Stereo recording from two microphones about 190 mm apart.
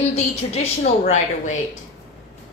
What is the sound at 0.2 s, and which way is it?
A woman's voice, 35° left (ahead or behind).